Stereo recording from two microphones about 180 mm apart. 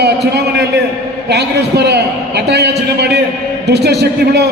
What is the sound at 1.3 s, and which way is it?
A man's voice, 65° right (ahead or behind).